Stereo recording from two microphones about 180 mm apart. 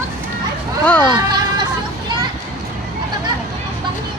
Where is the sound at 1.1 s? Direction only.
25° right (ahead or behind).